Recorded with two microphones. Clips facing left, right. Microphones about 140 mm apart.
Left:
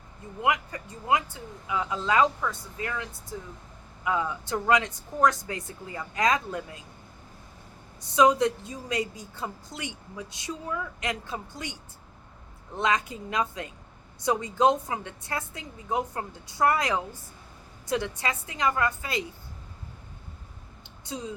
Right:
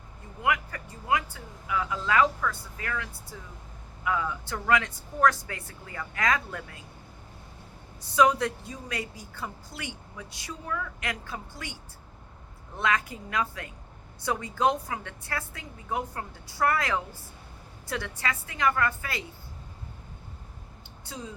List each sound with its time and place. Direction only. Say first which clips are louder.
0.4 s a woman's voice: left 2 dB; 20° left (ahead or behind)
8.1 s a woman's voice: left 2 dB; 20° left (ahead or behind)